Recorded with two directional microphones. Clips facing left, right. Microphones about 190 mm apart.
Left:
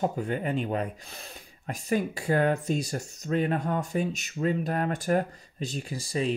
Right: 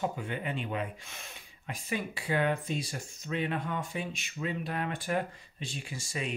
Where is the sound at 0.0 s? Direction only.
40° left (ahead or behind).